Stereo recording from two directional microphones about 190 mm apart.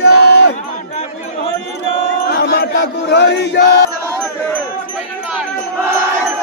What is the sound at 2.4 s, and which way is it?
Chant, 60° left (ahead or behind).